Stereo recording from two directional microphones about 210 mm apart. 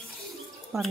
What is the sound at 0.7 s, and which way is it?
Speech, 15° right (ahead or behind).